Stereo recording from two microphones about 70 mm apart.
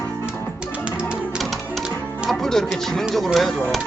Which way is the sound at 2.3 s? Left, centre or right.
Centre.